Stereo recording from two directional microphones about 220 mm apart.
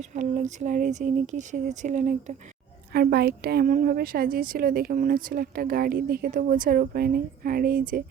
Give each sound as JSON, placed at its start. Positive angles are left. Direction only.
{"t": 0.0, "sound": "a woman's voice", "side_deg": -35}
{"t": 2.9, "sound": "a woman's voice", "side_deg": -45}